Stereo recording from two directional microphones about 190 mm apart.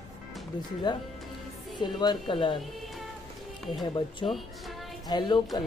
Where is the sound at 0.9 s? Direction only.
25° left (ahead or behind).